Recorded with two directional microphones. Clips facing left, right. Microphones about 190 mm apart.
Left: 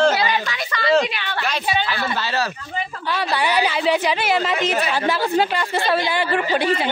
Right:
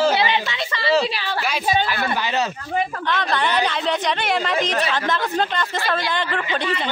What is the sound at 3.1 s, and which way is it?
A woman's voice, 10° left (ahead or behind).